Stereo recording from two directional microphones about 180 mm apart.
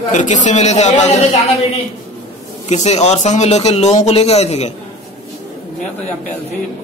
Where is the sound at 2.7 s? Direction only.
40° left (ahead or behind).